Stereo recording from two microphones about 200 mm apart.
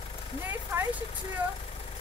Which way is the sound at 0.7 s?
15° right (ahead or behind).